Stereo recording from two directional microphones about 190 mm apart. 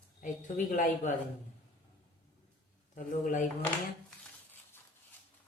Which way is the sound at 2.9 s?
45° left (ahead or behind).